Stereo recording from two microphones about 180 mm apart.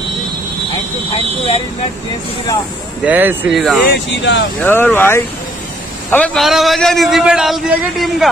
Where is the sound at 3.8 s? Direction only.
75° left (ahead or behind).